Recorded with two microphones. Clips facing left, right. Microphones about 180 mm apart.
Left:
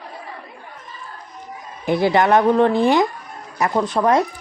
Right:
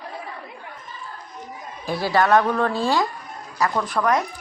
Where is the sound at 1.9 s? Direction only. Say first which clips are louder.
Left 3 dB; 20° left (ahead or behind).